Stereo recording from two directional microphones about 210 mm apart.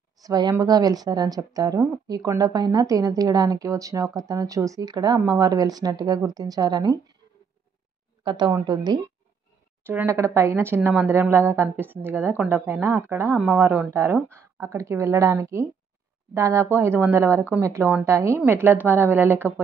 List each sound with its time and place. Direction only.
0.2 s a woman's voice: 20° right (ahead or behind)
8.2 s a woman's voice: 20° right (ahead or behind)